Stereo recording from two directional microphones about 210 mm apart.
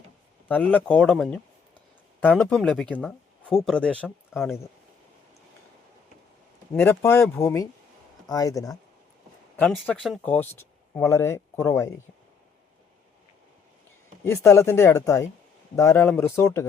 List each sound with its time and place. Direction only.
0.4 s speech: 5° left (ahead or behind)
6.7 s speech: 10° left (ahead or behind)
9.6 s speech: centre (ahead or behind)
14.3 s speech: 15° left (ahead or behind)